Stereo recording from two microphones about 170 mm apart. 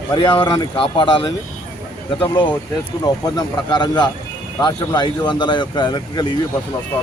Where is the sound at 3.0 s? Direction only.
20° left (ahead or behind).